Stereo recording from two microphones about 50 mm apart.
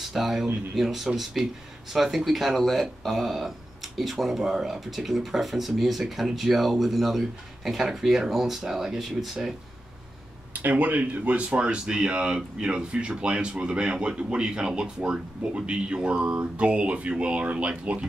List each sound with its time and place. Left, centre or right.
0.0 s speech: centre
10.5 s speech: right